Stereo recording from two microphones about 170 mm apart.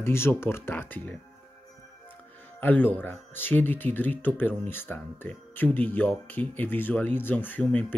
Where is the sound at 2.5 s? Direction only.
10° left (ahead or behind).